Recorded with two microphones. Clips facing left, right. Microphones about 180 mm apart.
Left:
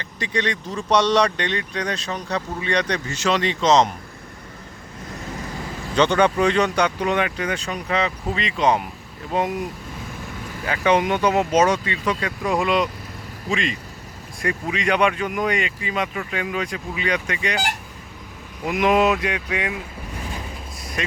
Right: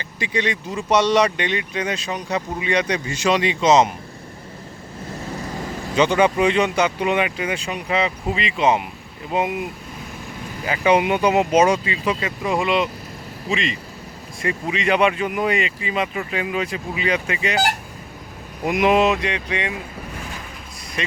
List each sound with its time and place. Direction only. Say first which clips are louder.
0.0 s speech: right 1 dB; 5° right (ahead or behind)
5.9 s speech: right 1 dB; 5° right (ahead or behind)
10.7 s speech: right 2 dB; 10° right (ahead or behind)
18.6 s speech: right 2 dB; 15° right (ahead or behind)
18.9 s speech: even; centre (ahead or behind)